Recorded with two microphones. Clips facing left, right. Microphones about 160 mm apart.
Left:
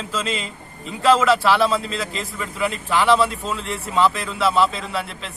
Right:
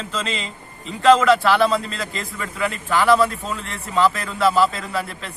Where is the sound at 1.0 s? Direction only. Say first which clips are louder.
Right 2 dB; centre (ahead or behind).